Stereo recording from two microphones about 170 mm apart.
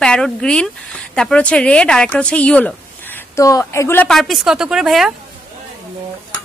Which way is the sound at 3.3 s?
20° left (ahead or behind).